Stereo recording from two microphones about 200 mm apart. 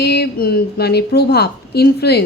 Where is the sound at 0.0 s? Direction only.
55° left (ahead or behind).